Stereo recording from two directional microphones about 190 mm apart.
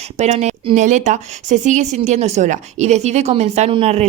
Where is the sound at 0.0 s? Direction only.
35° right (ahead or behind).